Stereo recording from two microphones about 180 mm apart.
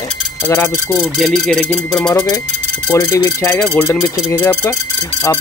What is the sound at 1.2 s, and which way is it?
Speech, centre (ahead or behind).